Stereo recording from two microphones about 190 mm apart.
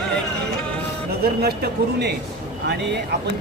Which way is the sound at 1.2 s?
55° right (ahead or behind).